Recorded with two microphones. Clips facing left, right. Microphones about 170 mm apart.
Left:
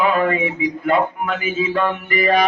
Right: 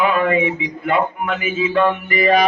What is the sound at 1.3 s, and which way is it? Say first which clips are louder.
Speech: right 3 dB; 40° left (ahead or behind).